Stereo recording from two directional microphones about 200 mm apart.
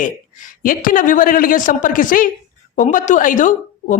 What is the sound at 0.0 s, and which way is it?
A woman's voice, 45° left (ahead or behind).